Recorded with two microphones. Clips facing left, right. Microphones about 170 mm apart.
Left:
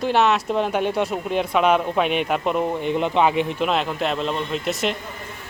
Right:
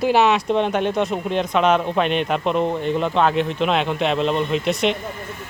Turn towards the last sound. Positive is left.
turn(degrees=0)  # may be behind; listen again after turning